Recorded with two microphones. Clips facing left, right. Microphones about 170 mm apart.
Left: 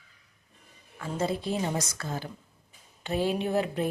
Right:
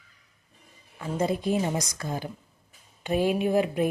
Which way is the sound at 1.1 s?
15° right (ahead or behind).